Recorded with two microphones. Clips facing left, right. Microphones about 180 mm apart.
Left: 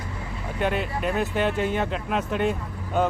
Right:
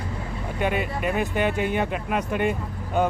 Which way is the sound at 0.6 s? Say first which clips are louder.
Even; 5° right (ahead or behind).